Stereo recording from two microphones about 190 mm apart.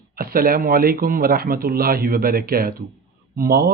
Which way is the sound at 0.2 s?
50° right (ahead or behind).